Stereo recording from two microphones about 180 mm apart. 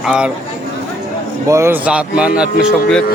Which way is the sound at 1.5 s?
15° right (ahead or behind).